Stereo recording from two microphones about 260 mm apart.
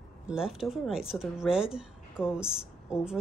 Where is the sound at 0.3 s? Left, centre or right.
Centre.